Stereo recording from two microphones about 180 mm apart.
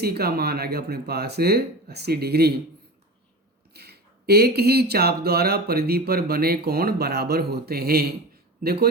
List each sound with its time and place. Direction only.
0.0 s speech: 60° right (ahead or behind)
3.8 s speech: 60° right (ahead or behind)